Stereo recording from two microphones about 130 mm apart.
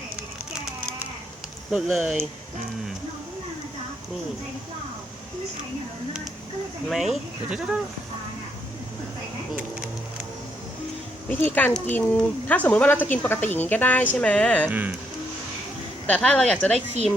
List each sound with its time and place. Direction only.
1.7 s speech: centre (ahead or behind)
6.8 s speech: centre (ahead or behind)
11.3 s speech: 15° left (ahead or behind)
14.7 s speech: 10° right (ahead or behind)
16.0 s speech: 10° left (ahead or behind)
16.7 s speech: 55° right (ahead or behind)